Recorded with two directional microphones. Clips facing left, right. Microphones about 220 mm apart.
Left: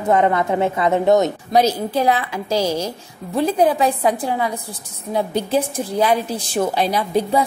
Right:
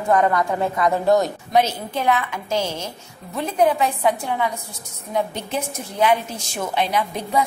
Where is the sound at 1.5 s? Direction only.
35° left (ahead or behind).